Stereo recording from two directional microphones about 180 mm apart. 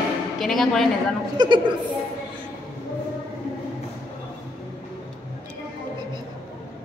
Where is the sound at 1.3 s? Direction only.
25° right (ahead or behind).